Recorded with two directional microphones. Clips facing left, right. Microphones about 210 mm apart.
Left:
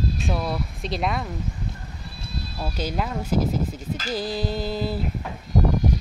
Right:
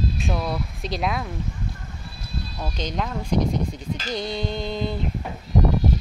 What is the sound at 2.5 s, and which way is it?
Speech, 5° left (ahead or behind).